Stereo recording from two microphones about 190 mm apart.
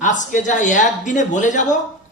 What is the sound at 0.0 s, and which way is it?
A man's voice, 40° left (ahead or behind).